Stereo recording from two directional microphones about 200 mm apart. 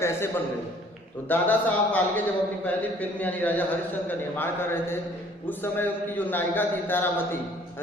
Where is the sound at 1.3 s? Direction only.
10° left (ahead or behind).